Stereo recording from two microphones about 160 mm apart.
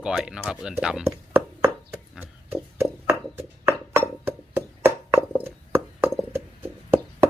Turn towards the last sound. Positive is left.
turn(degrees=-15)  # may be behind; listen again after turning